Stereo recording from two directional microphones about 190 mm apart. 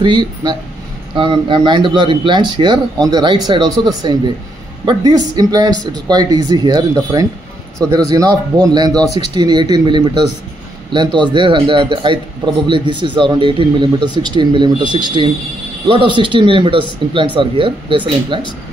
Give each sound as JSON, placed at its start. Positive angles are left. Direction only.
{"t": 0.0, "sound": "speech", "side_deg": -20}